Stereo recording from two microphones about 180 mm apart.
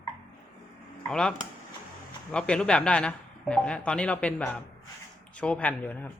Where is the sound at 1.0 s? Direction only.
5° left (ahead or behind).